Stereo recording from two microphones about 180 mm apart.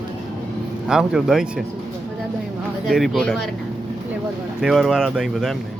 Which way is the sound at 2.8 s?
Centre (ahead or behind).